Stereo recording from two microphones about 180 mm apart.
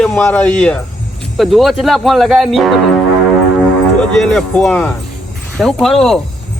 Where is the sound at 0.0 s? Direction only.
5° left (ahead or behind).